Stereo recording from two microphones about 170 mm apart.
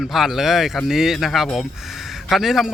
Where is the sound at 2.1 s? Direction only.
Centre (ahead or behind).